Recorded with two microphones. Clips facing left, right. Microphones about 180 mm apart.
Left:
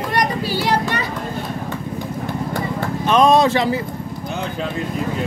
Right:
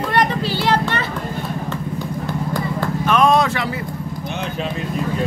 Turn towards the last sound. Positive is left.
turn(degrees=25)  # may be behind; listen again after turning